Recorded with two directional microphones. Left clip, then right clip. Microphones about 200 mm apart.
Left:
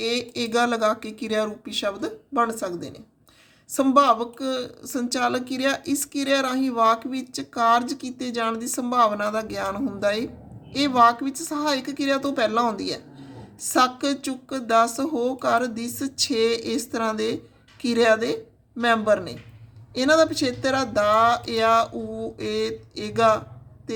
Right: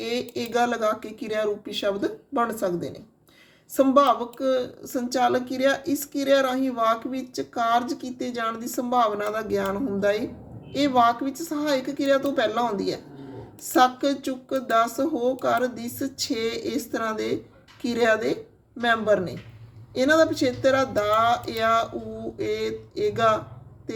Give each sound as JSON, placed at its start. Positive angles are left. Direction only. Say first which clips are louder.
{"t": 0.0, "sound": "speech", "louder": "left 3 dB", "side_deg": 25}